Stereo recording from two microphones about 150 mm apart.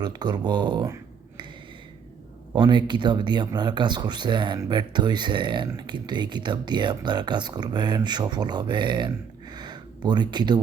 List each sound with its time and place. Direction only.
0.0 s speech: 30° right (ahead or behind)
2.5 s speech: 30° right (ahead or behind)